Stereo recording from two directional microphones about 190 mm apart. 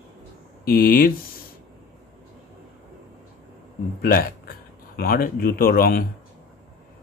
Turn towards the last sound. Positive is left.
turn(degrees=50)  # may be behind; listen again after turning